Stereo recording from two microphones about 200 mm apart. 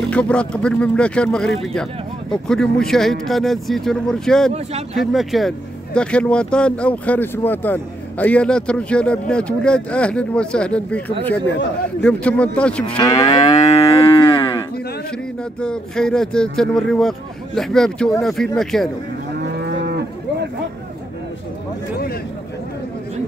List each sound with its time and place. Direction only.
0.0 s speech: 5° left (ahead or behind)
12.9 s moo: 20° left (ahead or behind)
13.7 s moo: 30° left (ahead or behind)
15.6 s speech: 5° left (ahead or behind)